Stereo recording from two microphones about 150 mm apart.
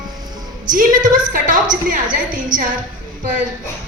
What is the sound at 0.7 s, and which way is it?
A woman's voice, 65° right (ahead or behind).